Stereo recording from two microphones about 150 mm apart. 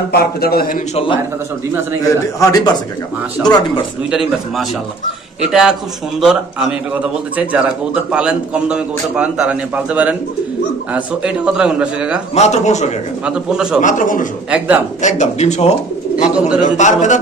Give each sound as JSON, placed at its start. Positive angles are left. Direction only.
{"t": 0.1, "sound": "a man's voice", "side_deg": 90}
{"t": 2.0, "sound": "a man's voice", "side_deg": 25}
{"t": 4.1, "sound": "a man's voice", "side_deg": -5}
{"t": 6.9, "sound": "a man's voice", "side_deg": -10}
{"t": 12.4, "sound": "speech", "side_deg": 50}
{"t": 13.2, "sound": "a man's voice", "side_deg": -5}
{"t": 13.7, "sound": "a man's voice", "side_deg": 60}
{"t": 14.5, "sound": "a man's voice", "side_deg": -10}
{"t": 15.0, "sound": "speech", "side_deg": 50}
{"t": 16.3, "sound": "a man's voice", "side_deg": -5}
{"t": 16.6, "sound": "speech", "side_deg": 55}